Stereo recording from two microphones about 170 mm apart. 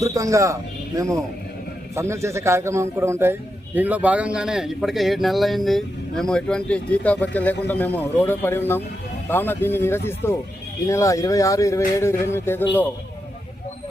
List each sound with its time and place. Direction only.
0.0 s a man's voice: 20° right (ahead or behind); by 12.6 s 15° left (ahead or behind)